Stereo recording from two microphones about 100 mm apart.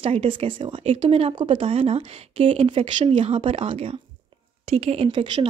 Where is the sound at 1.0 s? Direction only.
75° right (ahead or behind).